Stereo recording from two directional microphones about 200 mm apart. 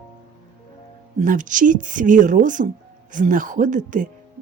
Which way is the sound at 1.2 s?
40° right (ahead or behind).